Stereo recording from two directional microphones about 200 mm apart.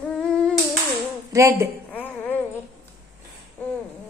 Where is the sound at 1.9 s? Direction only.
10° left (ahead or behind).